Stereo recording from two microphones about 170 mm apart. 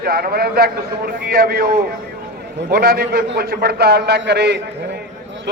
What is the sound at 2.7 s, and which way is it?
A man's voice, 65° right (ahead or behind).